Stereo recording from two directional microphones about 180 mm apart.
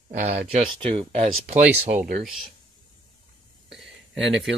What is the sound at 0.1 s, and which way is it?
Speech, 35° right (ahead or behind).